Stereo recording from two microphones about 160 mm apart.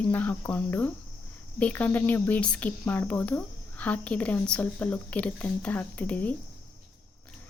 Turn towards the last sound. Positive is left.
turn(degrees=10)  # may be behind; listen again after turning